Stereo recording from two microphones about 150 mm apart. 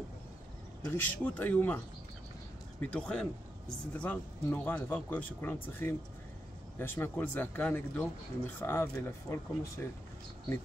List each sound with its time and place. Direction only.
0.8 s speech: 10° left (ahead or behind)
2.8 s speech: 5° left (ahead or behind)